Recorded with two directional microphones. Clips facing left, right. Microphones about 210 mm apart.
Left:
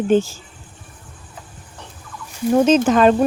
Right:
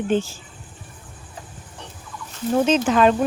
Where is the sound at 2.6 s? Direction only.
45° left (ahead or behind).